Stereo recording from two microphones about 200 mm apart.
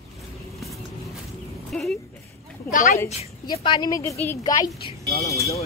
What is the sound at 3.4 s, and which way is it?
A woman's voice, 25° left (ahead or behind).